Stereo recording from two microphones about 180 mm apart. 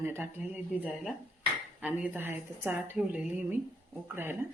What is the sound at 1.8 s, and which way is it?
A woman's voice, 10° right (ahead or behind).